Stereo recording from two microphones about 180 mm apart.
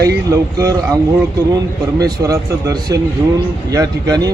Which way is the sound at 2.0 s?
20° right (ahead or behind).